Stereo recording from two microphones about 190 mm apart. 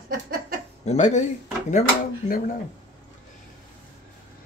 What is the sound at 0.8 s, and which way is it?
Speech, 35° left (ahead or behind).